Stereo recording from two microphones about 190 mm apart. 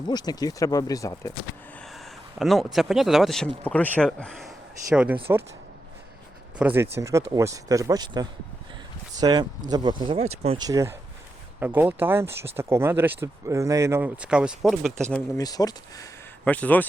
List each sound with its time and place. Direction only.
0.1 s speech: 20° left (ahead or behind)
1.8 s a sound: centre (ahead or behind)
2.7 s speech: centre (ahead or behind)
5.3 s speech: 15° right (ahead or behind)
6.6 s speech: 10° right (ahead or behind); by 10.6 s 30° right (ahead or behind)
10.6 s speech: 15° right (ahead or behind); by 15.0 s centre (ahead or behind)
15.4 s speech: 20° left (ahead or behind)
16.4 s speech: 5° left (ahead or behind)